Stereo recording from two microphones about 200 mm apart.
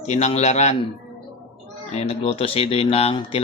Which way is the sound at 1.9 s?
30° left (ahead or behind).